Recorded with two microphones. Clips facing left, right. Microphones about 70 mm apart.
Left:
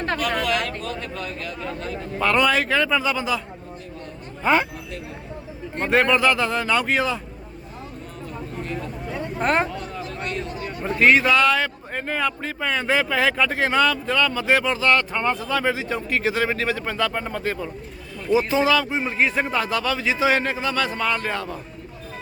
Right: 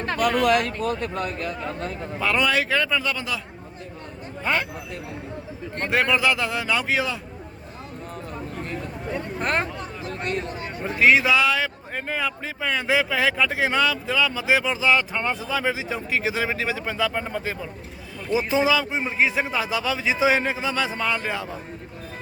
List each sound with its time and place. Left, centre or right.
0.4 s speech: right
2.1 s speech: centre
4.4 s speech: centre
5.7 s speech: centre
9.1 s a sound: centre
9.7 s a sound: right
10.8 s a man's voice: centre